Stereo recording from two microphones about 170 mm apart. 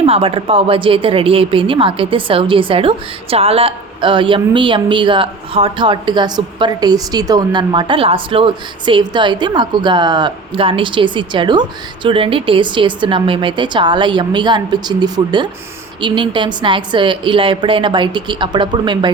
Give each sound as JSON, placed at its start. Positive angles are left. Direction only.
{"t": 0.0, "sound": "speech", "side_deg": -35}